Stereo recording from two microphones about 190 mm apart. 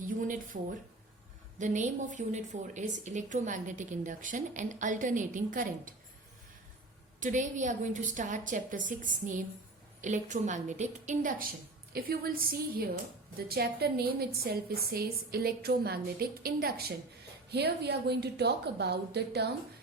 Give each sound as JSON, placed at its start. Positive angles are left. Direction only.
{"t": 0.2, "sound": "a sound", "side_deg": -45}
{"t": 1.5, "sound": "speech", "side_deg": -40}
{"t": 7.2, "sound": "a woman's voice", "side_deg": -40}